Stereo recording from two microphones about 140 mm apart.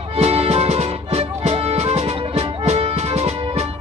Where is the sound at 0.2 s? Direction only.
45° right (ahead or behind).